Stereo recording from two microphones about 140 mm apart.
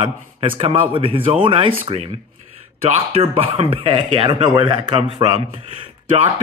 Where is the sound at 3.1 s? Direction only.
45° right (ahead or behind).